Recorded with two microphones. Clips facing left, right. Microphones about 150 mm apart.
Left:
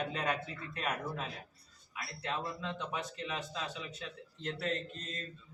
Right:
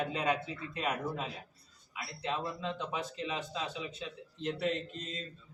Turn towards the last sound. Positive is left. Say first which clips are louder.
# right 1 dB
turn(degrees=-15)  # may be behind; listen again after turning